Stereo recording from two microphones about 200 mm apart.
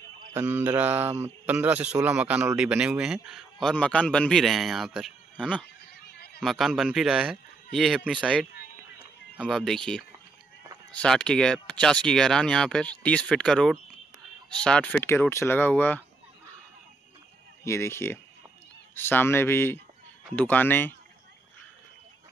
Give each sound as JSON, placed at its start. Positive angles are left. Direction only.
{"t": 0.3, "sound": "mantra", "side_deg": -10}
{"t": 1.2, "sound": "a man's voice", "side_deg": -10}
{"t": 5.9, "sound": "a sound", "side_deg": 55}
{"t": 6.4, "sound": "a man's voice", "side_deg": 0}
{"t": 17.6, "sound": "speech", "side_deg": 15}